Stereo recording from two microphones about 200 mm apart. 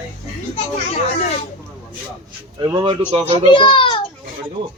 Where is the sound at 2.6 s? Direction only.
25° right (ahead or behind).